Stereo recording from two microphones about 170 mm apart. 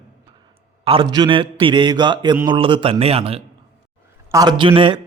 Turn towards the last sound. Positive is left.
turn(degrees=-30)  # may be behind; listen again after turning